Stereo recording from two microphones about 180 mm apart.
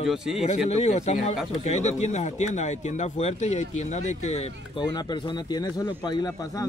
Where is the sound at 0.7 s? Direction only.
40° left (ahead or behind).